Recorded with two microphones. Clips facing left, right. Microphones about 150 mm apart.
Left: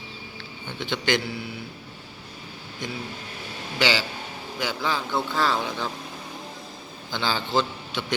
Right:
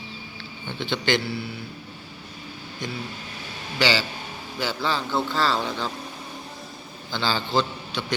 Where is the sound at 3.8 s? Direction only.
15° left (ahead or behind).